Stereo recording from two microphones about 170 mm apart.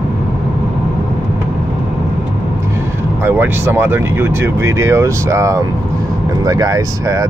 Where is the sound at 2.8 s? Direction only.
15° right (ahead or behind).